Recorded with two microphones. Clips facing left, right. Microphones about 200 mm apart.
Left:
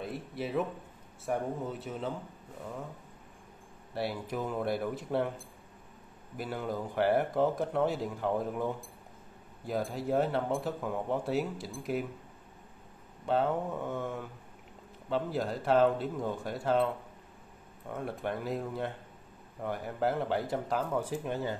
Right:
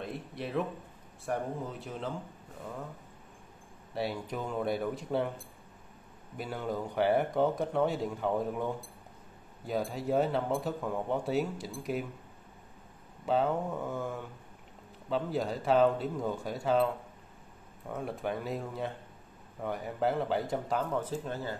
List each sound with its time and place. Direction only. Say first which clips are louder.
0.0 s speech: left 1 dB; centre (ahead or behind)
3.9 s speech: even; centre (ahead or behind)
6.3 s speech: even; centre (ahead or behind)
13.2 s speech: even; centre (ahead or behind)
21.0 s speech: left 2 dB; 15° left (ahead or behind)